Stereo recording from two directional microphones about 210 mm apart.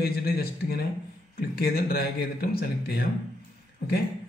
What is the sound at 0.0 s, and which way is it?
Speech, 45° left (ahead or behind).